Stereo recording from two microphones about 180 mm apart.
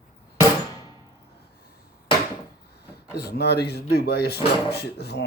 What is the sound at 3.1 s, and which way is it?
Speech, 60° left (ahead or behind).